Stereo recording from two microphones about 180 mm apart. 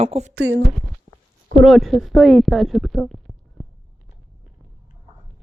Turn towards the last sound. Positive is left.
turn(degrees=0)  # may be behind; listen again after turning